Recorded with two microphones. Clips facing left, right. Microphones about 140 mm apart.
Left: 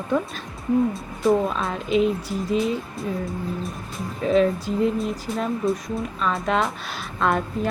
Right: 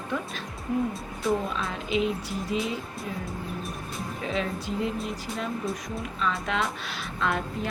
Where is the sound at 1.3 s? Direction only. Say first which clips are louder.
Left 7 dB; 45° left (ahead or behind).